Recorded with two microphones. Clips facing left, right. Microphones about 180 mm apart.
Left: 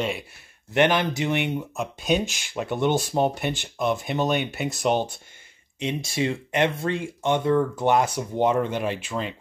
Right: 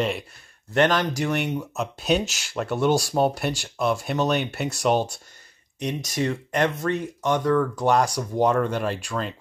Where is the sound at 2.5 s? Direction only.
Centre (ahead or behind).